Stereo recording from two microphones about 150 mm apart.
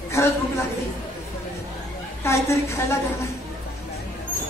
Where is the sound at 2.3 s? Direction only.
20° left (ahead or behind).